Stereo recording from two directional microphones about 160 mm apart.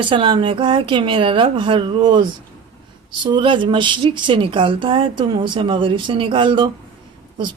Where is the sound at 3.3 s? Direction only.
30° right (ahead or behind).